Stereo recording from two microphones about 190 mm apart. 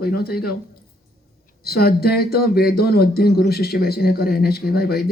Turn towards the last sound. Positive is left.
turn(degrees=55)  # may be behind; listen again after turning